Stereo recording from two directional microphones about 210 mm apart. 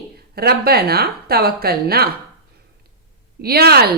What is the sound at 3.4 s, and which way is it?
Speech, 50° right (ahead or behind).